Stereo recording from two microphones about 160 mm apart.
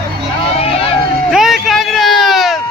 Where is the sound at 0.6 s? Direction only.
35° left (ahead or behind).